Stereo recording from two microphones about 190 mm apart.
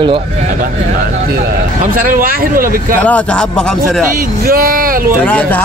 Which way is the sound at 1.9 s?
45° right (ahead or behind).